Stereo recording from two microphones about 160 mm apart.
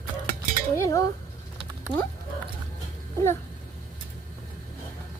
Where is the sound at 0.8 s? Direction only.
20° left (ahead or behind).